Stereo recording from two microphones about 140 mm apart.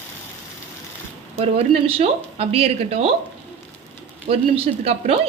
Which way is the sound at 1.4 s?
45° right (ahead or behind).